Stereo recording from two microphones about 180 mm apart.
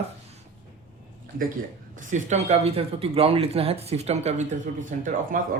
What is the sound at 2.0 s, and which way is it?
Speech, 40° right (ahead or behind).